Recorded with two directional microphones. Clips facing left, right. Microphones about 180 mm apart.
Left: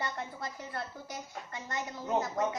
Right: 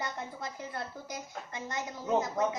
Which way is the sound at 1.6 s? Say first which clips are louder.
Right 2 dB; 20° right (ahead or behind).